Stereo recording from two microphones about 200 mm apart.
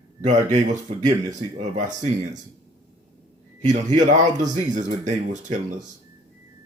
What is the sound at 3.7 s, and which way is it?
Speech, 35° right (ahead or behind).